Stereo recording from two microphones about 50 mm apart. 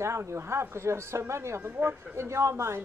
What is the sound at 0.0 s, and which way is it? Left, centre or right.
Speech, right.